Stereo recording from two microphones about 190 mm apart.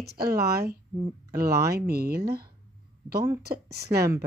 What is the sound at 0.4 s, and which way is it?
Speech, 55° right (ahead or behind).